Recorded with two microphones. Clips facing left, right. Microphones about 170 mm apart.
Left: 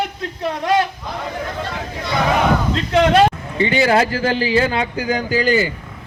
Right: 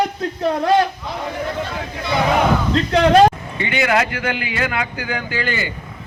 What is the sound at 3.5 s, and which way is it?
A man's voice, 30° left (ahead or behind).